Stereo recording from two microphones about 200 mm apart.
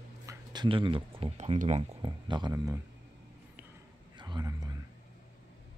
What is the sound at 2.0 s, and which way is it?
Speech, 20° right (ahead or behind).